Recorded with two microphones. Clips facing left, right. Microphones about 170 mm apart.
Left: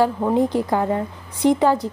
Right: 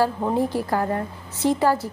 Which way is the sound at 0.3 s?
20° left (ahead or behind).